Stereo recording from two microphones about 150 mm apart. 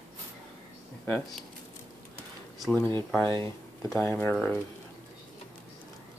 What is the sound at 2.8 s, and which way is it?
Speech, 15° left (ahead or behind).